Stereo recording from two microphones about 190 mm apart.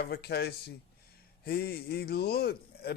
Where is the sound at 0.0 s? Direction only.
55° left (ahead or behind).